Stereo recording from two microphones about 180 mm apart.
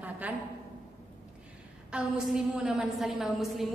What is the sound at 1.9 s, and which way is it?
A woman's voice, 5° right (ahead or behind).